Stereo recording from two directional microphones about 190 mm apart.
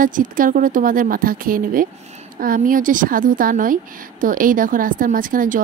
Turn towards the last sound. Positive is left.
turn(degrees=-45)  # may be behind; listen again after turning